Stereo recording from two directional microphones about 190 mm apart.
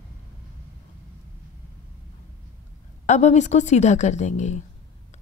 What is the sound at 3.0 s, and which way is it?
Speech, 40° left (ahead or behind).